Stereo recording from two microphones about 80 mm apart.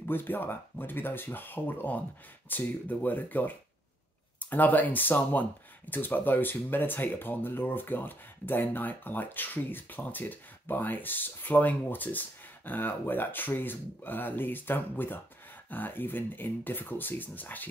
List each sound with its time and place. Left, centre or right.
0.0 s speech: left